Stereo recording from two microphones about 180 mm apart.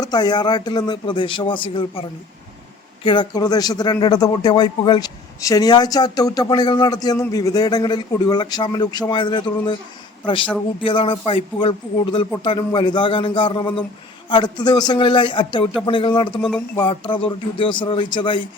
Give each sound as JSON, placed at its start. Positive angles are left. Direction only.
{"t": 0.0, "sound": "speech", "side_deg": 25}
{"t": 10.8, "sound": "speech", "side_deg": 30}